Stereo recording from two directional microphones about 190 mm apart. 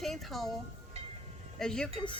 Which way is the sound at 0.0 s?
Centre (ahead or behind).